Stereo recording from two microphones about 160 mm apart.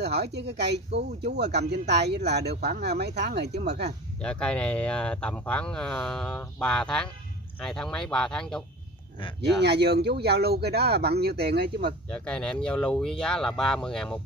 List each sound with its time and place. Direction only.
0.0 s speech: 90° right
4.2 s speech: 5° left (ahead or behind)
9.6 s speech: 90° right
12.1 s speech: 5° left (ahead or behind)